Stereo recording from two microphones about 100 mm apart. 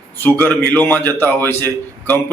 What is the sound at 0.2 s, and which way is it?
A man's voice, 20° left (ahead or behind).